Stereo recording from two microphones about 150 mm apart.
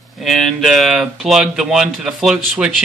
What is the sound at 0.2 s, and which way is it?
Speech, centre (ahead or behind).